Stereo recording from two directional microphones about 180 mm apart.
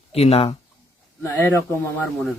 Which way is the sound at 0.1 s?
35° left (ahead or behind).